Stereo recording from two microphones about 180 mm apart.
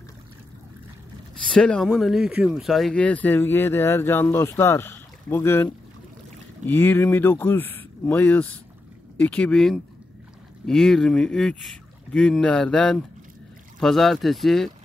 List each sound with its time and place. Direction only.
1.5 s speech: 5° left (ahead or behind)